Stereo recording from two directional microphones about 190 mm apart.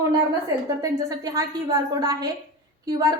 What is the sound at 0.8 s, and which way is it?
A woman's voice, 20° right (ahead or behind).